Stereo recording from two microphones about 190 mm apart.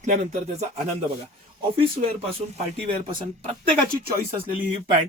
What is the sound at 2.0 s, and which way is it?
Speech, 45° right (ahead or behind).